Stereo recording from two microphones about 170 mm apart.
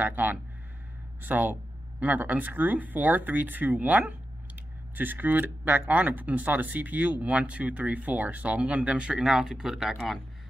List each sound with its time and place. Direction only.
0.0 s speech: 10° right (ahead or behind)